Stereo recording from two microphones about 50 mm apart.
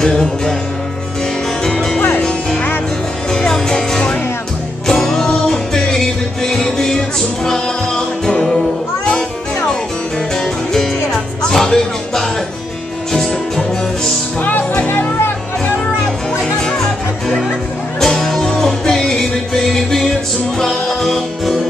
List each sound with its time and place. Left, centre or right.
0.0 s music: centre
1.6 s music: centre
2.0 s music: left
3.3 s music: centre
10.4 s music: centre
14.4 s music: left
16.5 s music: centre
18.0 s music: centre